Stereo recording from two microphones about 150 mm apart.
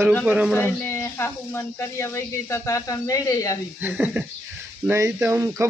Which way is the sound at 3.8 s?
10° right (ahead or behind).